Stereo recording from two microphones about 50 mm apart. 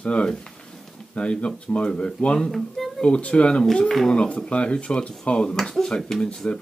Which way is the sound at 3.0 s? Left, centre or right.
Centre.